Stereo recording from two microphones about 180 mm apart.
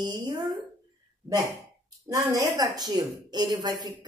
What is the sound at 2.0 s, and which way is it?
A woman's voice, 20° right (ahead or behind).